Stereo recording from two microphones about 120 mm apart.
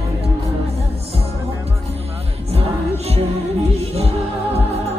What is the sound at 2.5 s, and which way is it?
Music, 60° right (ahead or behind).